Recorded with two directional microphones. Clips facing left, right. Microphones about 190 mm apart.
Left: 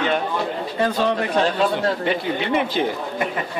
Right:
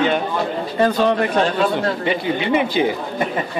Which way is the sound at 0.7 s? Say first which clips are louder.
Right 4 dB; 50° right (ahead or behind).